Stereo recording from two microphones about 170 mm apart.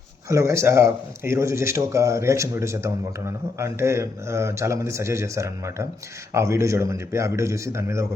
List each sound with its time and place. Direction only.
0.3 s speech: 15° right (ahead or behind)